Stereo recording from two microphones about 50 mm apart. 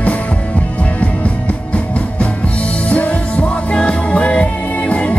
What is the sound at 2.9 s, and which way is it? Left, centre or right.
Music, left.